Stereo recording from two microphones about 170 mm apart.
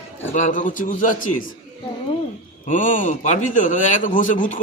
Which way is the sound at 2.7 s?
50° left (ahead or behind).